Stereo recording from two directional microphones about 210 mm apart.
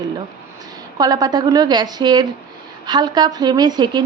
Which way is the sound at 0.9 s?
20° right (ahead or behind).